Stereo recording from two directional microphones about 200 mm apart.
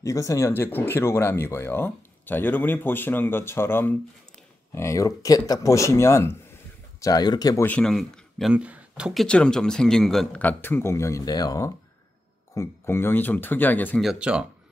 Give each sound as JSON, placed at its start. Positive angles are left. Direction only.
{"t": 0.0, "sound": "speech", "side_deg": 15}
{"t": 7.6, "sound": "speech", "side_deg": 5}